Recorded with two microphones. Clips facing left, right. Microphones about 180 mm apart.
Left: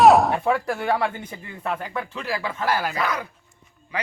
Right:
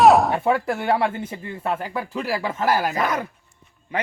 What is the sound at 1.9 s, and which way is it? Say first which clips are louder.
Speech: right 3 dB; 35° right (ahead or behind).